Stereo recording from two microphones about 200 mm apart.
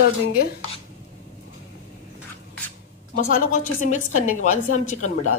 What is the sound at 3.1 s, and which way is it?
A woman's voice, 40° left (ahead or behind).